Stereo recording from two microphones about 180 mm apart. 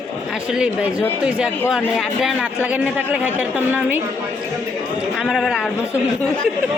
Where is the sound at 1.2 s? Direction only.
5° right (ahead or behind).